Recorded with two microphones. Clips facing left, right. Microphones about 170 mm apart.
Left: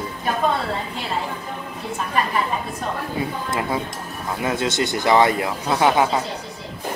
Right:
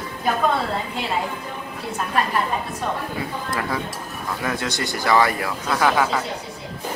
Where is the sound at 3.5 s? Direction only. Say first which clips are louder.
Left 2 dB; 20° left (ahead or behind).